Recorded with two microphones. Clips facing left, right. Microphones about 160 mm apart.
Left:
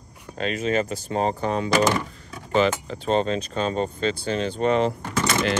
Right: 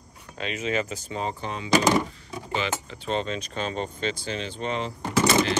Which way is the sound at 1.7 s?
10° right (ahead or behind).